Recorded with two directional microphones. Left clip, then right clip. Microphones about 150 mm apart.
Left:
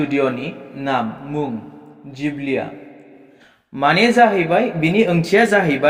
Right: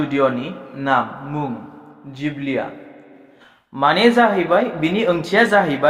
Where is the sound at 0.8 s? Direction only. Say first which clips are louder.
Right 3 dB; 30° left (ahead or behind).